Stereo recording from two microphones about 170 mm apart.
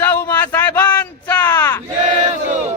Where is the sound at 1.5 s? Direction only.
15° left (ahead or behind).